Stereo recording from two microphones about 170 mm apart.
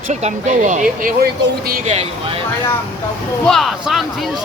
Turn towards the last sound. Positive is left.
turn(degrees=0)  # may be behind; listen again after turning